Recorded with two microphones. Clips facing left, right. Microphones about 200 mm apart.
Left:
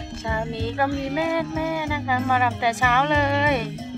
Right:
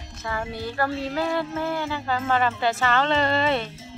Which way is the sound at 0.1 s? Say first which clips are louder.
Left 2 dB; 25° left (ahead or behind).